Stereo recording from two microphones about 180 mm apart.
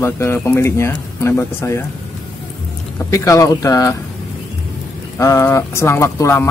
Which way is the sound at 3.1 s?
15° left (ahead or behind).